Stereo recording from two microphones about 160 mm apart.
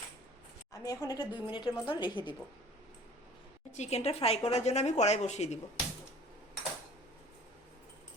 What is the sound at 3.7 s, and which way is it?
Speech, 45° left (ahead or behind).